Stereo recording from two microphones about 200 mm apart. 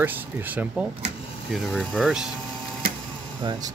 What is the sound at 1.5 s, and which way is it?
Speech, 5° left (ahead or behind).